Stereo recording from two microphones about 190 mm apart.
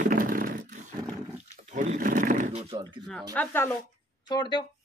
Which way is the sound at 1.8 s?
45° right (ahead or behind).